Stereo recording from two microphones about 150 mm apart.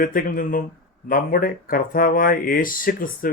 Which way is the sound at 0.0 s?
70° left (ahead or behind).